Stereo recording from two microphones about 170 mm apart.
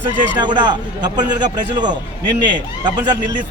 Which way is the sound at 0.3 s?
25° right (ahead or behind).